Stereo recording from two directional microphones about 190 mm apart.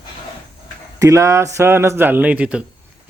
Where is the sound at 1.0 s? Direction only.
15° right (ahead or behind).